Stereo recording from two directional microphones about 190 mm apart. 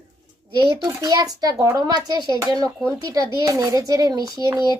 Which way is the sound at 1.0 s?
20° right (ahead or behind).